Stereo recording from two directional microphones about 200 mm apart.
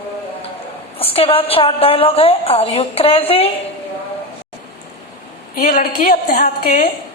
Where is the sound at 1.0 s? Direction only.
30° left (ahead or behind).